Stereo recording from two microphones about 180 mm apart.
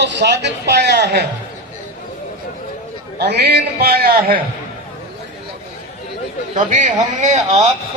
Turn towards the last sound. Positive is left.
turn(degrees=-40)  # may be behind; listen again after turning